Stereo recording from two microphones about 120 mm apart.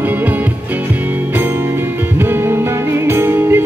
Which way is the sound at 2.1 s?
20° right (ahead or behind).